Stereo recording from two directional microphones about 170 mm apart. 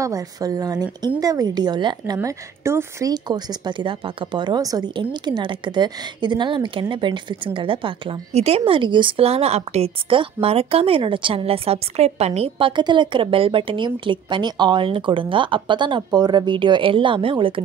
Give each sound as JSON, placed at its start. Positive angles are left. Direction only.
{"t": 0.0, "sound": "a woman's voice", "side_deg": -20}